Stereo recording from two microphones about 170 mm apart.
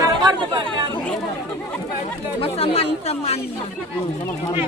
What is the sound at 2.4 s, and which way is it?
Speech, 35° left (ahead or behind).